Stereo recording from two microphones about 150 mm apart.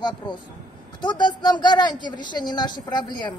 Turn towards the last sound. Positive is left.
turn(degrees=30)  # may be behind; listen again after turning